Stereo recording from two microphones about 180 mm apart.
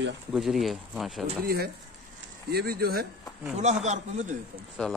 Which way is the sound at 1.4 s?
60° right (ahead or behind).